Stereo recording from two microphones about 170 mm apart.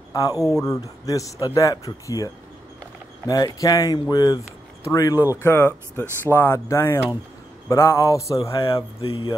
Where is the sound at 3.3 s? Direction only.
20° left (ahead or behind).